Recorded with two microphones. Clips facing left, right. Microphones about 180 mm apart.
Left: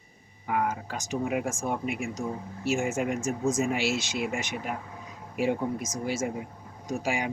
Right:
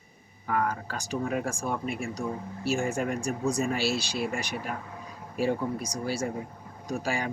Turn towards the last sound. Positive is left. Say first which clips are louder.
# left 1 dB
turn(degrees=15)  # may be behind; listen again after turning